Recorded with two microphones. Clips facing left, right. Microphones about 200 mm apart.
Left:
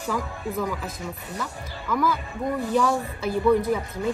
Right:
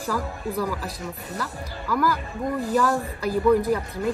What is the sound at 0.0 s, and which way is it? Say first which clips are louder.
A woman's voice: right 1 dB; 5° right (ahead or behind).